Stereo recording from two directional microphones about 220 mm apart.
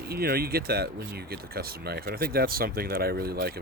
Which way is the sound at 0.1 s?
45° right (ahead or behind).